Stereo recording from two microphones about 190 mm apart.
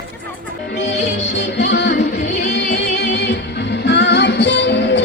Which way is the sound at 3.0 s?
65° left (ahead or behind).